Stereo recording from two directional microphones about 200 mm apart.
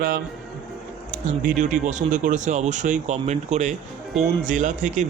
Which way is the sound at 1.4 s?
40° right (ahead or behind).